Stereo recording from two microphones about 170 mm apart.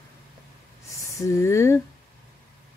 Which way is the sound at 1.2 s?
15° left (ahead or behind).